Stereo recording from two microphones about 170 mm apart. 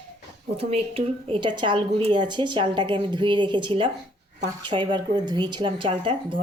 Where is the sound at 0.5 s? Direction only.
35° right (ahead or behind).